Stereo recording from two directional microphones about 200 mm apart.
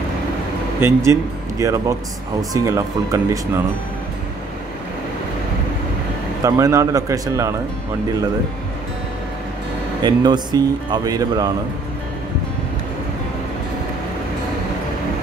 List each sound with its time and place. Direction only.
0.7 s speech: 10° right (ahead or behind)
6.4 s speech: 15° right (ahead or behind)
10.0 s speech: 20° right (ahead or behind)